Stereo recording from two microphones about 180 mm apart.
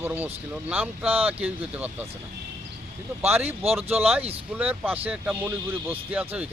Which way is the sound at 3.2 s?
10° right (ahead or behind).